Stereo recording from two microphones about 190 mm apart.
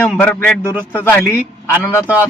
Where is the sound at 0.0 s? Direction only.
5° left (ahead or behind).